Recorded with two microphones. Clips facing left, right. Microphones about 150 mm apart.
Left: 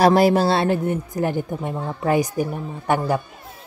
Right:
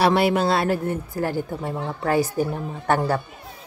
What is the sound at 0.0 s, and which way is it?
Speech, 40° left (ahead or behind).